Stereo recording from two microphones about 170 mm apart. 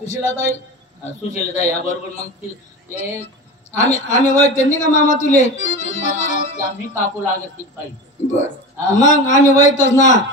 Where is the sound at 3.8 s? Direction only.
40° left (ahead or behind).